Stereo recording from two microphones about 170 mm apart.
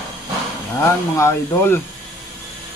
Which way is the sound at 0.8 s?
15° left (ahead or behind).